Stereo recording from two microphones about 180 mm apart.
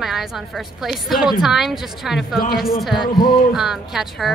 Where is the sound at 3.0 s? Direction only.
25° left (ahead or behind).